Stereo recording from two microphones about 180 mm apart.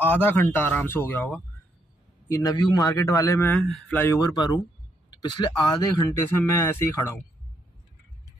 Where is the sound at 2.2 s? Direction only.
20° left (ahead or behind).